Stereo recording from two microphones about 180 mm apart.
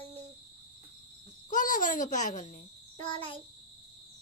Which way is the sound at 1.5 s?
45° left (ahead or behind).